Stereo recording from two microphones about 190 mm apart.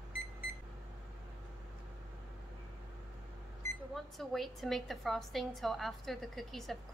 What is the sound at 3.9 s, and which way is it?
A woman's voice, centre (ahead or behind).